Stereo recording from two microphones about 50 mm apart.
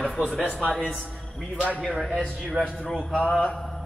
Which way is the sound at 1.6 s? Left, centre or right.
Left.